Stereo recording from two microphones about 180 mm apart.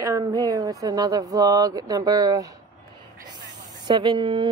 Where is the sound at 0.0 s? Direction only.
20° right (ahead or behind).